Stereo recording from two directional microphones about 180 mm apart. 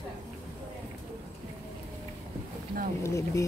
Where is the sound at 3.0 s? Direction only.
15° left (ahead or behind).